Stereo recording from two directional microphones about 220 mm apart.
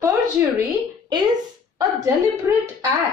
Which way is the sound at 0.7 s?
15° right (ahead or behind).